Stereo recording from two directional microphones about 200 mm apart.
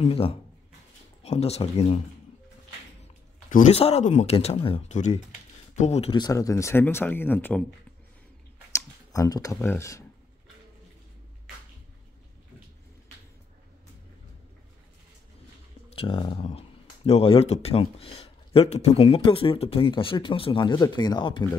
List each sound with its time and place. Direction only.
0.0 s speech: 30° left (ahead or behind)
3.4 s speech: 40° left (ahead or behind); by 7.6 s 10° left (ahead or behind)
8.7 s speech: 15° left (ahead or behind)
15.9 s speech: 30° left (ahead or behind)